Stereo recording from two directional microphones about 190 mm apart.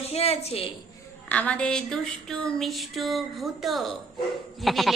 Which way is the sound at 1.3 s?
5° left (ahead or behind).